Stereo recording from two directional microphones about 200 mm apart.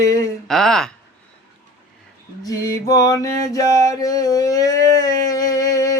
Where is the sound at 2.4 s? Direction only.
15° left (ahead or behind).